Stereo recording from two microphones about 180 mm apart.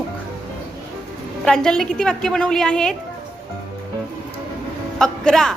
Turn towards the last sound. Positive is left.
turn(degrees=5)  # may be behind; listen again after turning